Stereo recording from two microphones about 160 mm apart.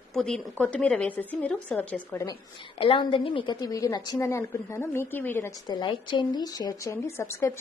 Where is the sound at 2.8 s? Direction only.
30° left (ahead or behind); by 5.5 s 15° left (ahead or behind).